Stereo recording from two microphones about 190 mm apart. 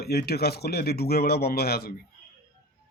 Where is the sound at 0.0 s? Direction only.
55° left (ahead or behind).